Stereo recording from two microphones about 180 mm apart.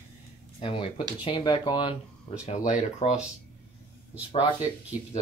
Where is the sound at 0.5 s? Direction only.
30° left (ahead or behind).